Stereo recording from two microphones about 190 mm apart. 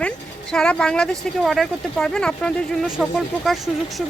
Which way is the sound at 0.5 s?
5° left (ahead or behind).